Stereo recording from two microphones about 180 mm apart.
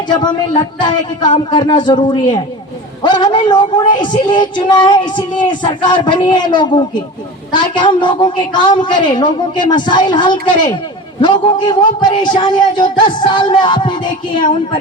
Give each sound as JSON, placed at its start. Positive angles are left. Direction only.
{"t": 0.1, "sound": "music", "side_deg": 25}